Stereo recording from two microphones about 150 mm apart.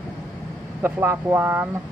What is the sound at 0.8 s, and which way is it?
Speech, 15° right (ahead or behind).